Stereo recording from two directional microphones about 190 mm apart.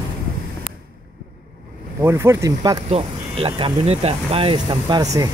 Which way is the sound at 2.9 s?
30° right (ahead or behind).